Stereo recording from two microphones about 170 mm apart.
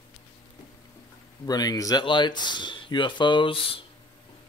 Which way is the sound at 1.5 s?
25° left (ahead or behind).